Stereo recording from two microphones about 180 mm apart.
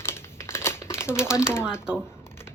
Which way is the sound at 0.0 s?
15° left (ahead or behind).